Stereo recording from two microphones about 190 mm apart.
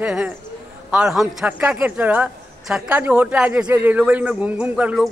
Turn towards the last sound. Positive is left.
turn(degrees=-5)  # may be behind; listen again after turning